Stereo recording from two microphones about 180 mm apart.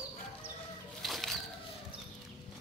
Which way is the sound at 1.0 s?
Centre (ahead or behind).